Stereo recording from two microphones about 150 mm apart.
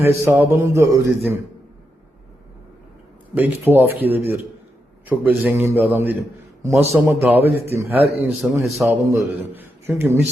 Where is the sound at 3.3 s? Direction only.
15° right (ahead or behind).